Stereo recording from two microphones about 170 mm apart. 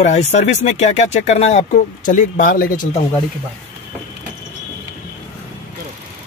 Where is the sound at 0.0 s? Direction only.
40° left (ahead or behind).